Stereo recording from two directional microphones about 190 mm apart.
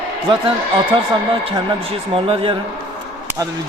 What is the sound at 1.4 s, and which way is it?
A man's voice, 30° right (ahead or behind).